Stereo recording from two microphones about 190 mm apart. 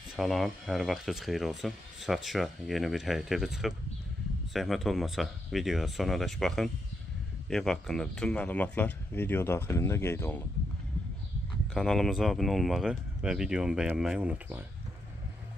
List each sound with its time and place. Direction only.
0.1 s speech: centre (ahead or behind)
11.7 s speech: centre (ahead or behind)